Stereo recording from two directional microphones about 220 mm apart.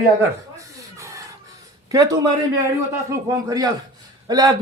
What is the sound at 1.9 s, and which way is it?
A man's voice, 15° right (ahead or behind).